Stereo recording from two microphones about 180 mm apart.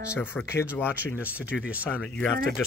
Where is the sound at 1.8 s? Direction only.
10° left (ahead or behind).